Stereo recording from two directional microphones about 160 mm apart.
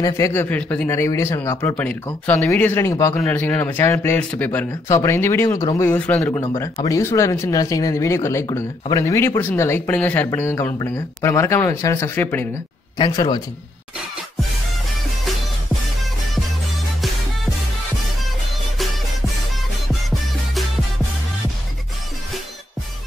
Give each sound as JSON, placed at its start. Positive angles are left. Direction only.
{"t": 0.0, "sound": "speech", "side_deg": 20}
{"t": 5.9, "sound": "speech", "side_deg": 10}
{"t": 6.3, "sound": "speech", "side_deg": 30}
{"t": 6.6, "sound": "speech", "side_deg": 20}
{"t": 12.9, "sound": "speech", "side_deg": 25}